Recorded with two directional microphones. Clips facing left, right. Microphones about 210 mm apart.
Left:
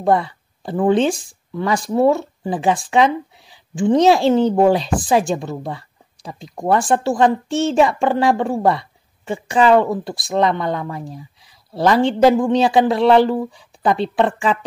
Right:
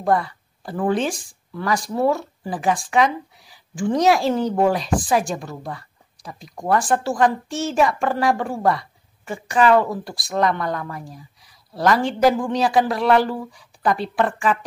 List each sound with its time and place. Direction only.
0.0 s speech: 25° left (ahead or behind)